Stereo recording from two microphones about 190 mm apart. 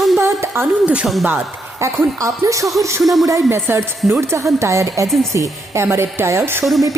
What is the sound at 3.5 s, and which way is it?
A woman's voice, 15° right (ahead or behind).